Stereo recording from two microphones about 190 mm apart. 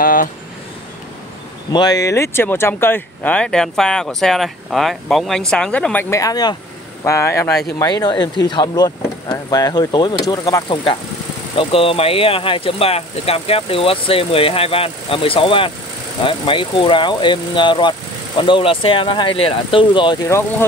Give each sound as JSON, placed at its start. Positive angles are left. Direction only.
{"t": 0.0, "sound": "speech", "side_deg": 45}
{"t": 1.7, "sound": "speech", "side_deg": 20}